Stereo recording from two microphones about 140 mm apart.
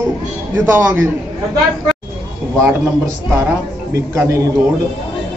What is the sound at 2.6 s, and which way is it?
Speech, 20° right (ahead or behind).